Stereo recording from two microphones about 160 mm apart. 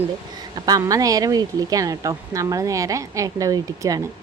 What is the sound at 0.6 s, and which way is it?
Speech, 20° right (ahead or behind).